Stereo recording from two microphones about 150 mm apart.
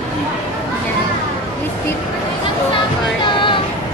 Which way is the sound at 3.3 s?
35° left (ahead or behind).